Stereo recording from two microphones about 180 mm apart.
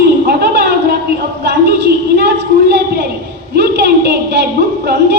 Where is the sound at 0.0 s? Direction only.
65° right (ahead or behind).